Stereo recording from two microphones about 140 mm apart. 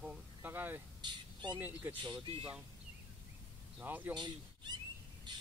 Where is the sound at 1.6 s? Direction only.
15° right (ahead or behind).